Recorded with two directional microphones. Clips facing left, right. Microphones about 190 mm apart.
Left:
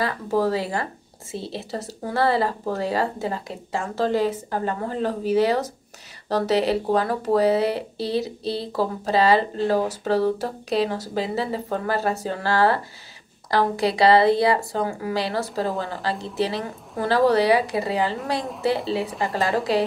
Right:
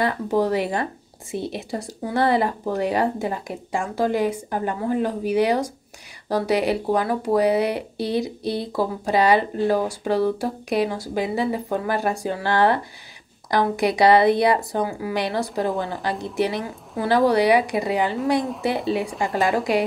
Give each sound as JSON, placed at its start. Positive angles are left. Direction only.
{"t": 0.0, "sound": "speech", "side_deg": -20}
{"t": 19.0, "sound": "speech", "side_deg": 0}
{"t": 19.3, "sound": "speech", "side_deg": -15}